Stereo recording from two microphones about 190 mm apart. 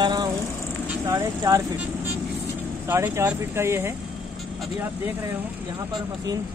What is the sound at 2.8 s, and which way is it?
Speech, 15° right (ahead or behind).